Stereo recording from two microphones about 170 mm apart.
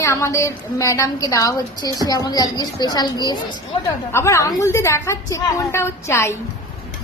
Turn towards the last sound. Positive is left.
turn(degrees=15)  # may be behind; listen again after turning